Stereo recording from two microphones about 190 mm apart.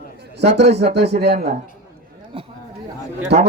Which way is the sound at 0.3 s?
65° right (ahead or behind).